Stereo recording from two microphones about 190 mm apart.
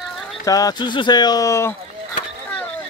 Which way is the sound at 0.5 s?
20° left (ahead or behind).